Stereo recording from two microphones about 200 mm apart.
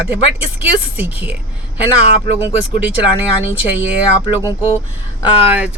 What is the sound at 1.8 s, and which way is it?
Speech, 30° left (ahead or behind).